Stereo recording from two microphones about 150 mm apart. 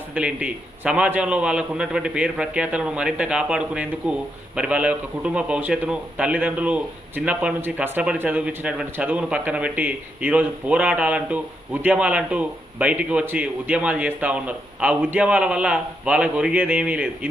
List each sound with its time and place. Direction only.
0.1 s a man's voice: 5° right (ahead or behind)